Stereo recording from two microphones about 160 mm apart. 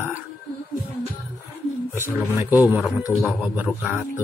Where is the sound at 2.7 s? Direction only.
10° right (ahead or behind).